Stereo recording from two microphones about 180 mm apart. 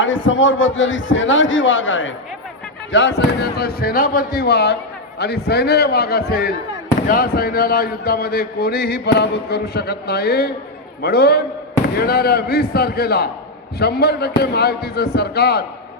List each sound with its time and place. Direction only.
0.0 s a man's voice: 90° left
2.9 s a man's voice: 75° left (ahead or behind)